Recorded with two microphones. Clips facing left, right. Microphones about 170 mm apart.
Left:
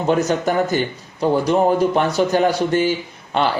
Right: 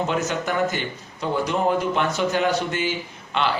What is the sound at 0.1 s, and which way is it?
Speech, 35° left (ahead or behind).